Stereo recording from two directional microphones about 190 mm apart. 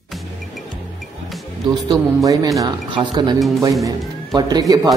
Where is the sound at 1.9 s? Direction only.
15° right (ahead or behind).